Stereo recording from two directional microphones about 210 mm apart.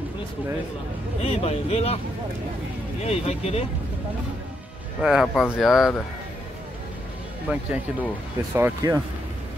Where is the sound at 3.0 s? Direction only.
30° left (ahead or behind).